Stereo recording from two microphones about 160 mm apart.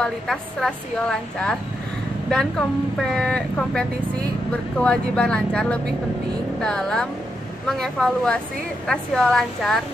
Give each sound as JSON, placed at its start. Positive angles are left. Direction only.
{"t": 0.0, "sound": "a woman's voice", "side_deg": 5}
{"t": 3.0, "sound": "a woman's voice", "side_deg": 5}